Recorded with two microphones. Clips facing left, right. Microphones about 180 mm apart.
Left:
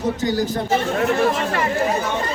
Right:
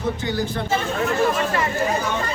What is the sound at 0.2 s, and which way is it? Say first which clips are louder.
Speech: left 4 dB; 40° left (ahead or behind).